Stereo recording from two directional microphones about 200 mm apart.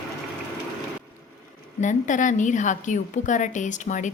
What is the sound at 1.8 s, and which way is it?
A woman's voice, 40° left (ahead or behind).